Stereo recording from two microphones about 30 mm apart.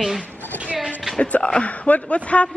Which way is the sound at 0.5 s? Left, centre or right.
Left.